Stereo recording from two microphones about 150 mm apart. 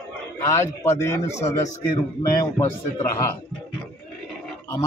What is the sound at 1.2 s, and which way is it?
Speech, 45° left (ahead or behind).